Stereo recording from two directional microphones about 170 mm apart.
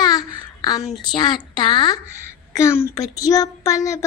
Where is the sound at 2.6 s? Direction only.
15° left (ahead or behind).